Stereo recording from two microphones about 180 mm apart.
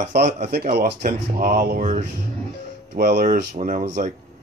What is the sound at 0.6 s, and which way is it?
Speech, 50° right (ahead or behind).